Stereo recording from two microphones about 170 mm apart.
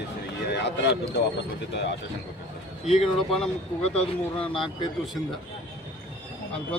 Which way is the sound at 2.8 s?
40° left (ahead or behind).